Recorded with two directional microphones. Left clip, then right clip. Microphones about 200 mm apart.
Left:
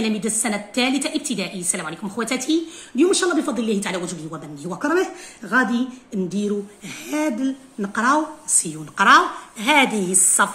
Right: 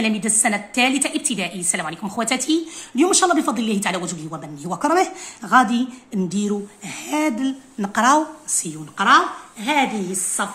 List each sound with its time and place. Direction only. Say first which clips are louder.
0.0 s a woman's voice: right 3 dB; 10° right (ahead or behind)
3.0 s speech: right 2 dB; 30° right (ahead or behind)
8.5 s a woman's voice: left 2 dB; centre (ahead or behind)
8.9 s a woman's voice: left 1 dB; 15° left (ahead or behind)